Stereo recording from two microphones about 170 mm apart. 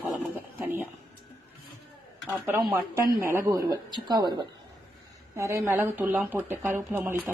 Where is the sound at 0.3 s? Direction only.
10° right (ahead or behind).